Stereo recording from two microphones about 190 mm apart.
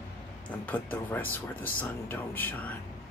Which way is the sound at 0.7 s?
10° left (ahead or behind).